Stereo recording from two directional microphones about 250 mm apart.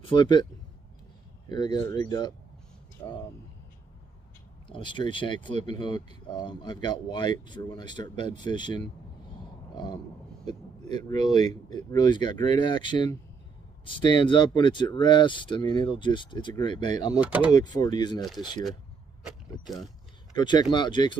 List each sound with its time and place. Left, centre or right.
0.1 s speech: centre
1.5 s speech: centre
4.6 s speech: centre
11.1 s speech: centre
17.2 s speech: centre
17.7 s speech: centre
19.2 s speech: centre
20.3 s speech: centre